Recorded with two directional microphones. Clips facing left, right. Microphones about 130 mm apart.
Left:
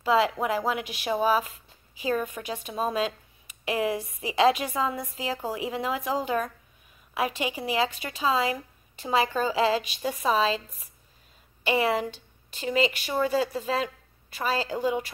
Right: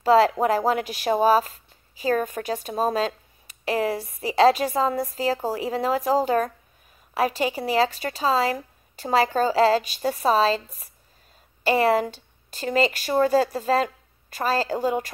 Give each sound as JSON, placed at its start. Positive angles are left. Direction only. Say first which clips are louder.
{"t": 0.0, "sound": "a woman's voice", "louder": "right 6 dB", "side_deg": -40}
{"t": 11.6, "sound": "a woman's voice", "louder": "right 5 dB", "side_deg": -40}